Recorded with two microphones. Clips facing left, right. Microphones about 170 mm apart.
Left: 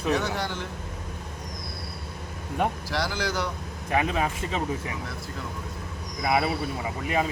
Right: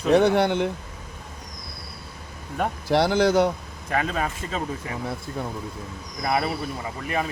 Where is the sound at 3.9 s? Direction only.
15° left (ahead or behind).